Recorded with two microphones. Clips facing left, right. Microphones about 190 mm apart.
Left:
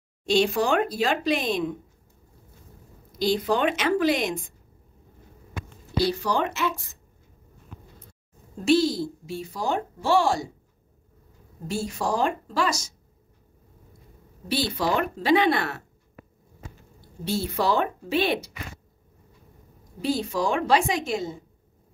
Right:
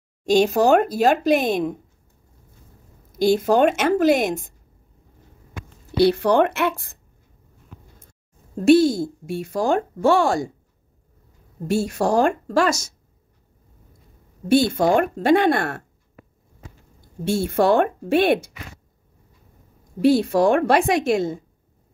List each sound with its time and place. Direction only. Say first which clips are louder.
0.2 s speech: right 5 dB; 45° right (ahead or behind)
3.1 s speech: right 6 dB; 50° right (ahead or behind)
5.9 s a woman's voice: right 8 dB; 60° right (ahead or behind)
8.6 s speech: right 6 dB; 55° right (ahead or behind)
11.6 s a woman's voice: right 7 dB; 70° right (ahead or behind)
12.1 s speech: right 6 dB; 45° right (ahead or behind)
14.5 s speech: right 9 dB; 50° right (ahead or behind)
17.2 s speech: right 7 dB; 50° right (ahead or behind)
20.0 s a woman's voice: right 9 dB; 65° right (ahead or behind)